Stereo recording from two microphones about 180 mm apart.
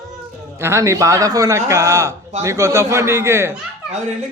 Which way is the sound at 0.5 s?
15° right (ahead or behind).